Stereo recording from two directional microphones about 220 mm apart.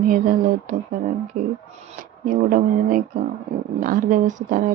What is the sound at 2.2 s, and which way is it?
A woman's voice, 35° right (ahead or behind).